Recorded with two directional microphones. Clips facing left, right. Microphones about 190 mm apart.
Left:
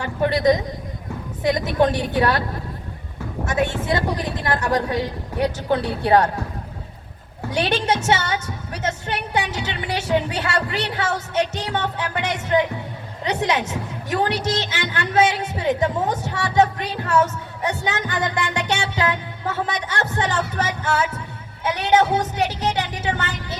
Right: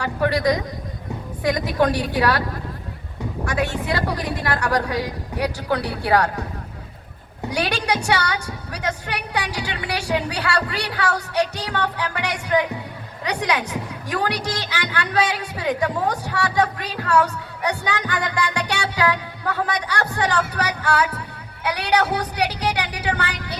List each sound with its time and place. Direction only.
0.0 s a woman's voice: 20° left (ahead or behind)
3.4 s a woman's voice: 25° left (ahead or behind)
7.5 s a woman's voice: 25° left (ahead or behind)
20.6 s music: 25° left (ahead or behind)
21.6 s a woman's voice: 20° left (ahead or behind)